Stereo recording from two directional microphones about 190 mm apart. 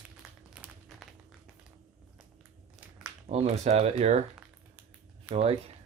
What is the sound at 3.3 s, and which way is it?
Speech, 35° right (ahead or behind).